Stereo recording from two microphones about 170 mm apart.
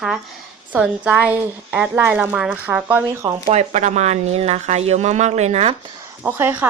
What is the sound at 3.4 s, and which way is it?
Speech, 40° right (ahead or behind).